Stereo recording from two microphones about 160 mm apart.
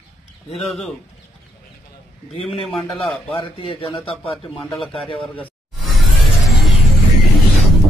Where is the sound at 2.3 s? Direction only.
40° left (ahead or behind).